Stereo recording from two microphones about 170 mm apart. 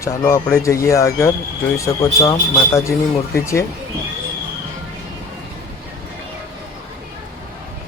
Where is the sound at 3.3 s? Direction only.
15° left (ahead or behind).